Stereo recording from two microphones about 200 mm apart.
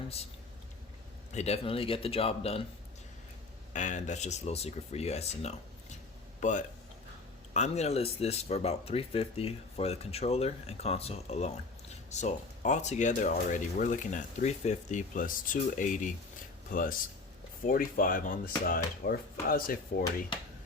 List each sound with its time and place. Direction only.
1.3 s speech: 35° left (ahead or behind)
3.7 s a man's voice: 35° left (ahead or behind)